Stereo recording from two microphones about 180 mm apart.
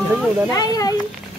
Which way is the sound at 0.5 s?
20° left (ahead or behind).